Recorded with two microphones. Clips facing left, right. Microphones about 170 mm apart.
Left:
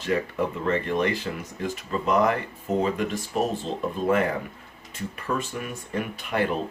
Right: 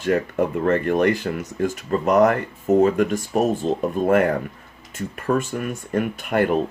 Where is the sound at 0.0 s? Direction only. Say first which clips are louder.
Right 5 dB; 50° right (ahead or behind).